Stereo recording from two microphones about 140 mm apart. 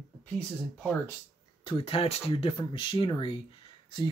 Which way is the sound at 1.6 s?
40° left (ahead or behind).